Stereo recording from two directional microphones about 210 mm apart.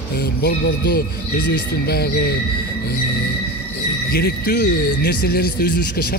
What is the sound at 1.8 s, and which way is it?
Speech, 50° left (ahead or behind).